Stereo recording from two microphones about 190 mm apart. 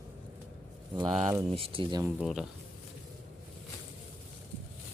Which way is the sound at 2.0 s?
Centre (ahead or behind).